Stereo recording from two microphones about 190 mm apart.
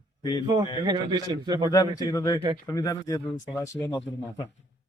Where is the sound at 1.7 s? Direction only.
20° left (ahead or behind).